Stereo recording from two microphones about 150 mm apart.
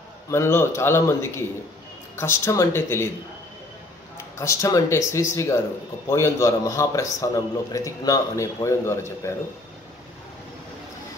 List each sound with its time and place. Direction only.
0.3 s a man's voice: 15° left (ahead or behind)
4.4 s a man's voice: 20° left (ahead or behind)